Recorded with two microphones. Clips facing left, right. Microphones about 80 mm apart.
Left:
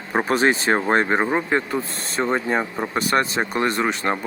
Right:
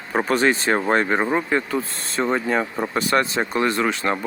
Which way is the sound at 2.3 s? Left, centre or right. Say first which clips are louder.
Even; centre.